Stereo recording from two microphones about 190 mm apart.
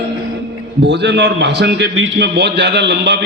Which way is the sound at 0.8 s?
65° right (ahead or behind).